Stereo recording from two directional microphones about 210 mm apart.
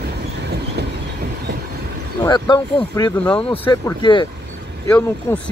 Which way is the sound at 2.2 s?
20° left (ahead or behind).